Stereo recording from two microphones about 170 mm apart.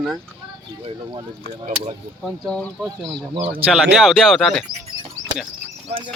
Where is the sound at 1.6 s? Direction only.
40° right (ahead or behind).